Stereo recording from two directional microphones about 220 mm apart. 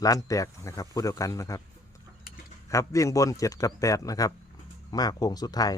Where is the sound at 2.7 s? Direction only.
15° left (ahead or behind).